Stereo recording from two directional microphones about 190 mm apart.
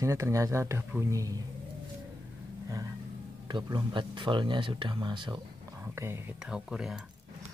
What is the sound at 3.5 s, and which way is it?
Speech, 25° right (ahead or behind).